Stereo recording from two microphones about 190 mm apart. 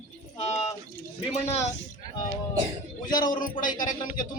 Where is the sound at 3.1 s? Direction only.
45° left (ahead or behind).